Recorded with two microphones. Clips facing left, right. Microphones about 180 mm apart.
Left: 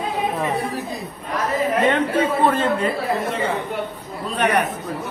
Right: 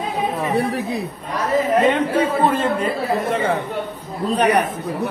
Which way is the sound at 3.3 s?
55° right (ahead or behind).